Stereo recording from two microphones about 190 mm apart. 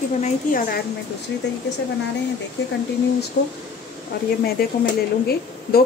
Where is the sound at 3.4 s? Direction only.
60° left (ahead or behind).